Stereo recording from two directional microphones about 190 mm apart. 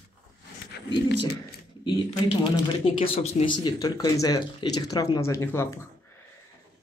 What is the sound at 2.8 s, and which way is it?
Speech, 30° left (ahead or behind).